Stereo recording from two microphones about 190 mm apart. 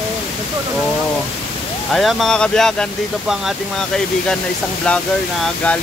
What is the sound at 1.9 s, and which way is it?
Speech, centre (ahead or behind).